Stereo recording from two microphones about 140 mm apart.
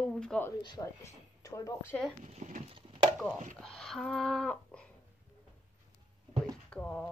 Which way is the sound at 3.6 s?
5° left (ahead or behind).